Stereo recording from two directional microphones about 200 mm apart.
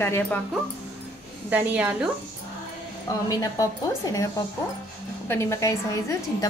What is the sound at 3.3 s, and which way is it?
Speech, 15° left (ahead or behind).